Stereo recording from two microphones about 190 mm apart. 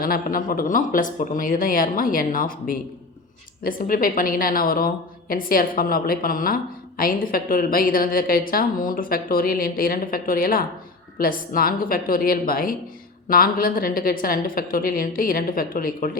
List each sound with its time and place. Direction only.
0.0 s a woman's voice: 50° left (ahead or behind)